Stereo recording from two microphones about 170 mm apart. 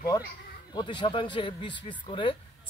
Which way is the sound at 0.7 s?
25° left (ahead or behind).